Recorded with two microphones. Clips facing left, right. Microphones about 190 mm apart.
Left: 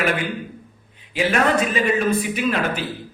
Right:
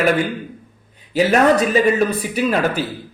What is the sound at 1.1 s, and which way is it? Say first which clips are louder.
A man's voice: right 5 dB; 40° right (ahead or behind).